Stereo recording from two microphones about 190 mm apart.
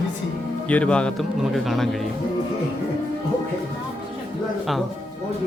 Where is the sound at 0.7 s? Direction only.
5° left (ahead or behind).